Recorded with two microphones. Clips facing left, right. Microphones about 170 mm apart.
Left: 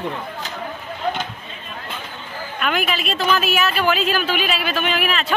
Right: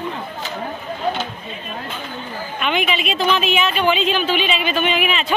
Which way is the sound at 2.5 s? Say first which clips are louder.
Right 1 dB; centre (ahead or behind).